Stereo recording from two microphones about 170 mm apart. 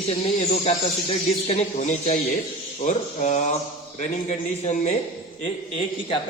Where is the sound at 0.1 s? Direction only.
40° left (ahead or behind).